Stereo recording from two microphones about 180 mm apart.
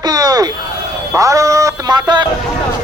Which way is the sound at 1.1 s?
15° right (ahead or behind).